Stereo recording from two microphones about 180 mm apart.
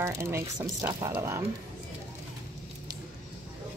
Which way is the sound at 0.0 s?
15° right (ahead or behind).